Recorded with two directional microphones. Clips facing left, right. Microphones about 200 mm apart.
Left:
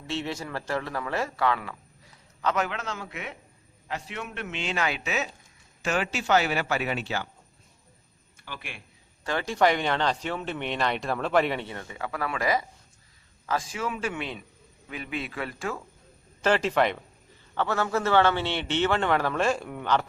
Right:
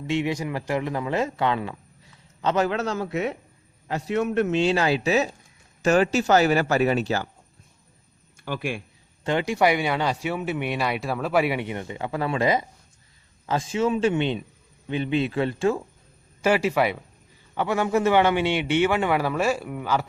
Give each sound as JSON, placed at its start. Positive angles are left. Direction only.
{"t": 0.1, "sound": "a man's voice", "side_deg": -15}
{"t": 8.4, "sound": "speech", "side_deg": -45}
{"t": 9.2, "sound": "speech", "side_deg": -20}
{"t": 16.4, "sound": "speech", "side_deg": -10}